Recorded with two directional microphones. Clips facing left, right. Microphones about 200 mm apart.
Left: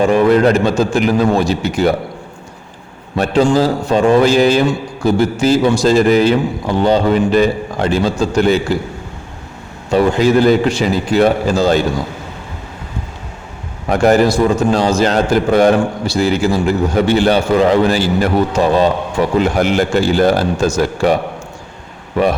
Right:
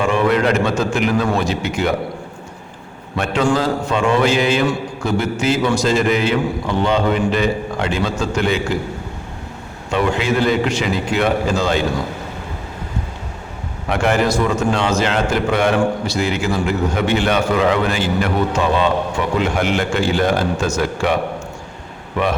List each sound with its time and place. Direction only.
0.0 s a man's voice: 40° left (ahead or behind)
3.4 s a man's voice: 30° left (ahead or behind)
9.9 s a man's voice: 40° left (ahead or behind)
13.9 s a man's voice: 40° left (ahead or behind)